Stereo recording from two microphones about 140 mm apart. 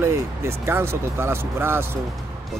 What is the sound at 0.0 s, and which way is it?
Speech, 15° right (ahead or behind).